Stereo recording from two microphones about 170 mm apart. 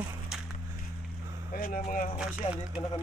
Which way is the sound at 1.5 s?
55° left (ahead or behind).